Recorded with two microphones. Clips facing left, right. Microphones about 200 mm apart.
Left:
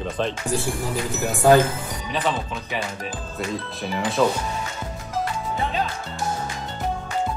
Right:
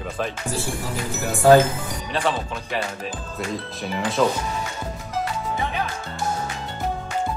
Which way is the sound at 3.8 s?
Centre (ahead or behind).